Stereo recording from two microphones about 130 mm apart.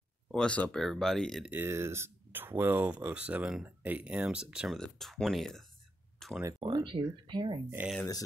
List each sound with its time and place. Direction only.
0.3 s speech: 10° left (ahead or behind)
1.5 s speech: 20° right (ahead or behind); by 5.7 s centre (ahead or behind)
6.1 s a sound: centre (ahead or behind)
6.6 s speech: 40° right (ahead or behind)